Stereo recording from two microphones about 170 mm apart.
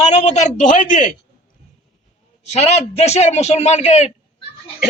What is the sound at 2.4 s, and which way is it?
A man's voice, 40° left (ahead or behind).